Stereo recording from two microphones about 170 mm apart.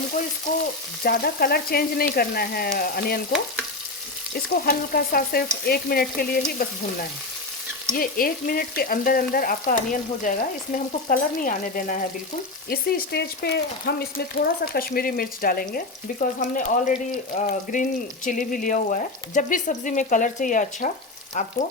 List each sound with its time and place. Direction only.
1.0 s frying: 65° left (ahead or behind)
4.6 s frying: 60° left (ahead or behind)
7.9 s frying: 60° left (ahead or behind)
11.1 s speech: 55° left (ahead or behind)
12.6 s speech: 70° left (ahead or behind)
14.3 s frying: 60° left (ahead or behind)
16.2 s speech: 50° left (ahead or behind)